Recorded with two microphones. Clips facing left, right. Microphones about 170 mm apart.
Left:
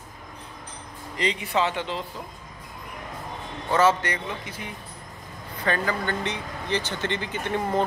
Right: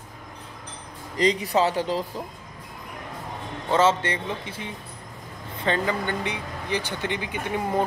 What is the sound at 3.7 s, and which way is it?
A man's voice, 25° right (ahead or behind).